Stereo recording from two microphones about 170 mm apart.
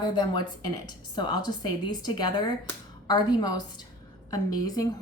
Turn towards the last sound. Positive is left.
turn(degrees=20)  # may be behind; listen again after turning